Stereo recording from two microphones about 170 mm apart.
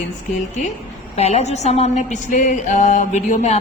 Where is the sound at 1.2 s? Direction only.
40° left (ahead or behind).